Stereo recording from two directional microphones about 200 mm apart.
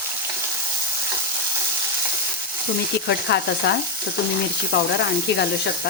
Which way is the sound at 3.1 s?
55° left (ahead or behind).